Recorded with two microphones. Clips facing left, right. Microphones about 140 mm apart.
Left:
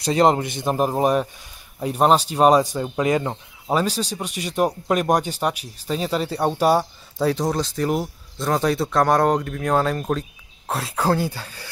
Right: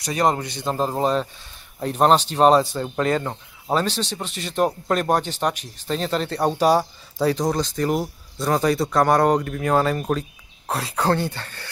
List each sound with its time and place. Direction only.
0.0 s speech: 25° left (ahead or behind)